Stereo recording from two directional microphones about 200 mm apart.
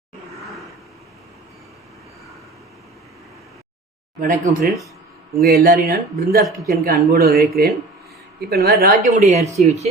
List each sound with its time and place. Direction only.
4.2 s speech: 45° right (ahead or behind)
8.8 s speech: 40° right (ahead or behind)